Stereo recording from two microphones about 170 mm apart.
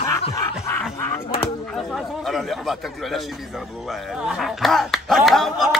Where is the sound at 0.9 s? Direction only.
15° left (ahead or behind).